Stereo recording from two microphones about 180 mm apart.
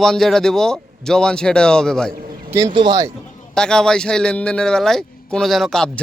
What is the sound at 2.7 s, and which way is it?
Speech, 25° right (ahead or behind).